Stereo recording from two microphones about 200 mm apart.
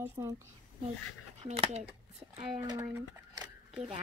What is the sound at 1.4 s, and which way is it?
Speech, 35° right (ahead or behind).